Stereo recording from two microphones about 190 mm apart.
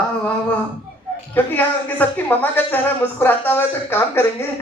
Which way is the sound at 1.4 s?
10° left (ahead or behind).